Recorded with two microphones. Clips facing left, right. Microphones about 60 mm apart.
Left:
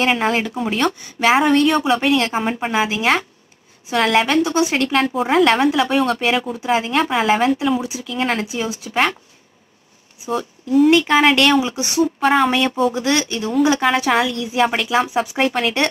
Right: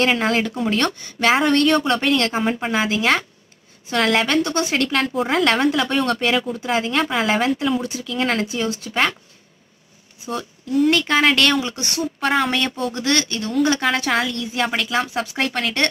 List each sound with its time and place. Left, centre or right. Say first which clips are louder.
0.0 s speech: left 1 dB; centre
10.2 s speech: left 4 dB; centre